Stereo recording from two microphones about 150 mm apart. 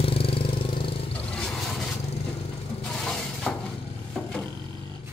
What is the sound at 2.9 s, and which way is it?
Shatter, 5° left (ahead or behind).